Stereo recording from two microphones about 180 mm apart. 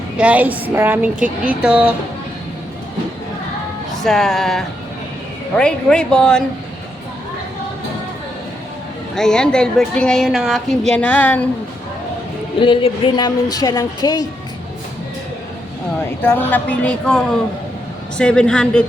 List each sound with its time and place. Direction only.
0.2 s a woman's voice: 10° right (ahead or behind)
4.0 s a woman's voice: centre (ahead or behind)
9.1 s a woman's voice: 5° left (ahead or behind)
12.5 s a woman's voice: 30° left (ahead or behind)
16.2 s a woman's voice: 10° left (ahead or behind)